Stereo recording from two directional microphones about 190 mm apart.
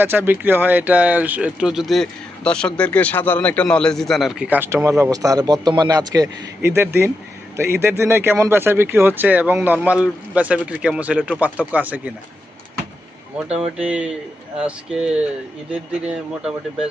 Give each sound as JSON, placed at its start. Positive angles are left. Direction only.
{"t": 0.0, "sound": "speech", "side_deg": -10}
{"t": 13.5, "sound": "speech", "side_deg": -5}